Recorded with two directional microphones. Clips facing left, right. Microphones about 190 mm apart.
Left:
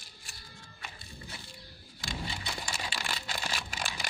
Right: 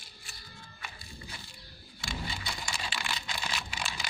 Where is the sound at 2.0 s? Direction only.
35° left (ahead or behind).